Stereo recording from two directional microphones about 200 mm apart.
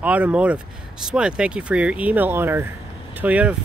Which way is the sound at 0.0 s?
5° right (ahead or behind).